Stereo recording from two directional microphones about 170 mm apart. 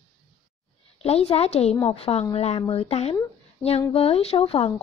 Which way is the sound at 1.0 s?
35° left (ahead or behind).